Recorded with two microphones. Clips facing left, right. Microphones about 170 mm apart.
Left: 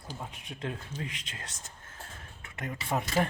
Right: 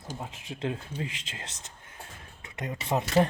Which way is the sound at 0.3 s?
90° right.